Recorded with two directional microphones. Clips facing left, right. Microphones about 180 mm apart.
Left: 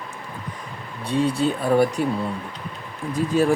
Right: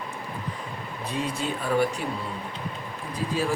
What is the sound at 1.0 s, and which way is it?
Speech, 30° left (ahead or behind).